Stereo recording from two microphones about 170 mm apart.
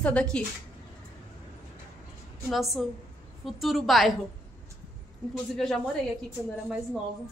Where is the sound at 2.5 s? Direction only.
Centre (ahead or behind).